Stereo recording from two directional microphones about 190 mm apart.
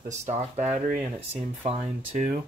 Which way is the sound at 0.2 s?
35° right (ahead or behind).